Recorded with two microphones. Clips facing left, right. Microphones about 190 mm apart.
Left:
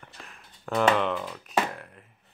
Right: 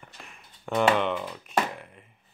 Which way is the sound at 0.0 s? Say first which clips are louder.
Even; centre (ahead or behind).